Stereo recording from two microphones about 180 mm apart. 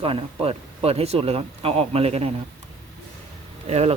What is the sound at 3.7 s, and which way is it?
Speech, 35° right (ahead or behind).